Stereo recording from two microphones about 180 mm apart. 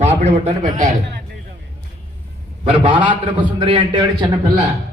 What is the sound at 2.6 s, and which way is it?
A man's voice, 30° right (ahead or behind).